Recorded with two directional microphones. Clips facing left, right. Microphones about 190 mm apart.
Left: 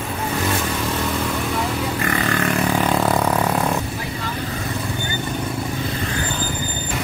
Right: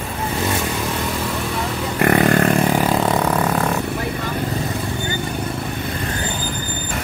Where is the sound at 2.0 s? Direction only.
55° right (ahead or behind).